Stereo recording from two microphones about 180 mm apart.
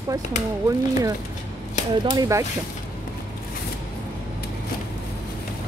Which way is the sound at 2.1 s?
20° right (ahead or behind).